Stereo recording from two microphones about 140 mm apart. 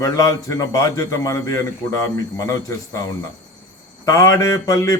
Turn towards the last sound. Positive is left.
turn(degrees=25)  # may be behind; listen again after turning